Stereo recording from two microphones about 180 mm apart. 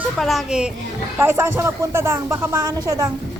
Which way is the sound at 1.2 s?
15° right (ahead or behind).